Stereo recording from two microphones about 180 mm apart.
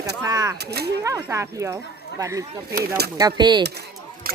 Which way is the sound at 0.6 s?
65° right (ahead or behind).